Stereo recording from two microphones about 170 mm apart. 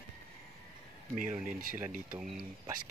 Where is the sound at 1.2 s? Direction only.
50° right (ahead or behind).